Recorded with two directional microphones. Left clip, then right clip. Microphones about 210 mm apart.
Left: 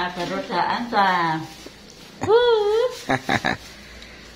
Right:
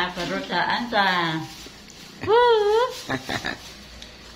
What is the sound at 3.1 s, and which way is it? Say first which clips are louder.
Speech: left 6 dB; 40° left (ahead or behind).